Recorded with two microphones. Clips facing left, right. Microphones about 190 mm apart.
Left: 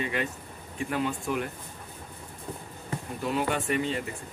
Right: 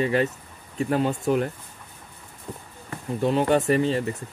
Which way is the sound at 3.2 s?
35° right (ahead or behind).